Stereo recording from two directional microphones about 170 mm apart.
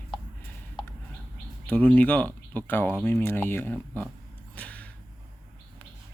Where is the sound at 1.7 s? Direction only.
10° left (ahead or behind).